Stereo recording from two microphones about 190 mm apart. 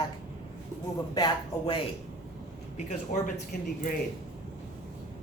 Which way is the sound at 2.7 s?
40° left (ahead or behind).